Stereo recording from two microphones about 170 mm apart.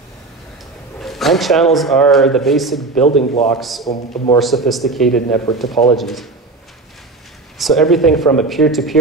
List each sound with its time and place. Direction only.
0.9 s speech: centre (ahead or behind)
3.1 s a man's voice: 40° left (ahead or behind)
3.5 s speech: centre (ahead or behind)
7.5 s speech: centre (ahead or behind)